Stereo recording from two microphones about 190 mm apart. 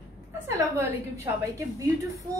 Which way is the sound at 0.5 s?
15° right (ahead or behind).